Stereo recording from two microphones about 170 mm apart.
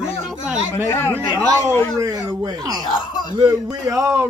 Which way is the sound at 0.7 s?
15° left (ahead or behind).